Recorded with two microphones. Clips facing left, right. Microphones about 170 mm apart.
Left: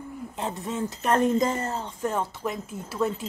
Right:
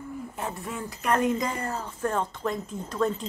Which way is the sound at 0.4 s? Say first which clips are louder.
Left 6 dB; 20° left (ahead or behind).